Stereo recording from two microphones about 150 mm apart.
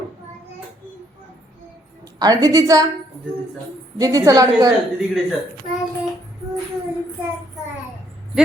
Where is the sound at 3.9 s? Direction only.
25° right (ahead or behind).